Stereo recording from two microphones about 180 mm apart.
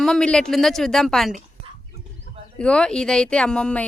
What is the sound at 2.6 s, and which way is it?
Speech, 5° left (ahead or behind).